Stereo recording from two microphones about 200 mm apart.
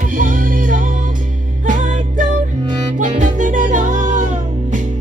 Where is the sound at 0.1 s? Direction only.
45° right (ahead or behind).